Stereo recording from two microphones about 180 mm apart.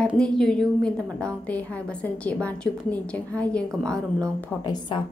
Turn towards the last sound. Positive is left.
turn(degrees=25)  # may be behind; listen again after turning